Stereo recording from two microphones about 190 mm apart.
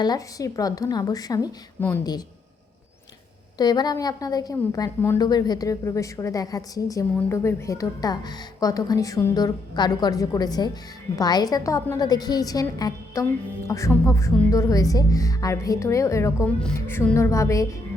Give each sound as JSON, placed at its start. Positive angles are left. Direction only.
{"t": 0.0, "sound": "a woman's voice", "side_deg": 20}
{"t": 3.6, "sound": "a woman's voice", "side_deg": 20}